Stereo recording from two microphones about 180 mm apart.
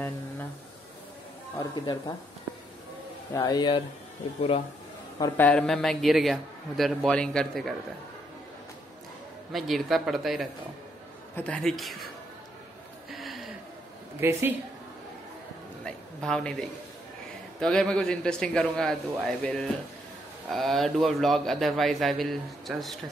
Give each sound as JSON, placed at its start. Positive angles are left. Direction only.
{"t": 1.6, "sound": "speech", "side_deg": 20}
{"t": 3.3, "sound": "speech", "side_deg": 20}
{"t": 5.4, "sound": "a man's voice", "side_deg": 5}
{"t": 9.5, "sound": "a man's voice", "side_deg": 0}
{"t": 13.1, "sound": "a sound", "side_deg": 0}
{"t": 14.2, "sound": "speech", "side_deg": -15}
{"t": 15.8, "sound": "a man's voice", "side_deg": 5}